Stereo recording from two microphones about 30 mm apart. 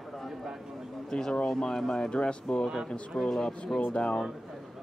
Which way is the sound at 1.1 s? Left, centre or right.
Left.